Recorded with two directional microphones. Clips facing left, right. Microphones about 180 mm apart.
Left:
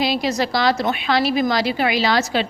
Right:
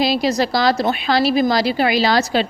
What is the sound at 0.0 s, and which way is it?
A woman's voice, 35° right (ahead or behind).